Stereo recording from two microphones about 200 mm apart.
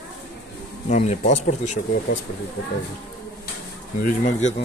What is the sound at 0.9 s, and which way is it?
Speech, 35° left (ahead or behind).